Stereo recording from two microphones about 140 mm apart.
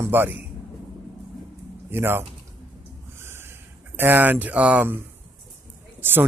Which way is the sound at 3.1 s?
15° right (ahead or behind).